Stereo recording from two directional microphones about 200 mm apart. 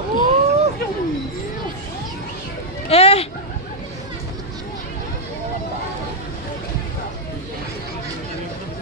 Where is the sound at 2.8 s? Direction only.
30° left (ahead or behind).